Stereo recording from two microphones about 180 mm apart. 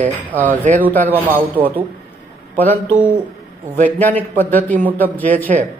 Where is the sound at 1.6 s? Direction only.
30° right (ahead or behind).